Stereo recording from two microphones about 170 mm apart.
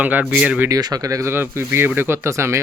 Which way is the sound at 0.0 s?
10° right (ahead or behind).